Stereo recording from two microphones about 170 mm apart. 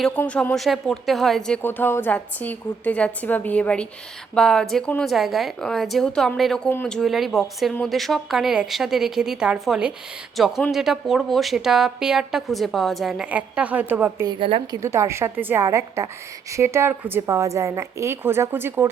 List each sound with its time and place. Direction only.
0.0 s a woman's voice: 5° left (ahead or behind); by 14.3 s 10° right (ahead or behind)
14.3 s a woman's voice: 30° right (ahead or behind)
14.8 s a woman's voice: 15° right (ahead or behind)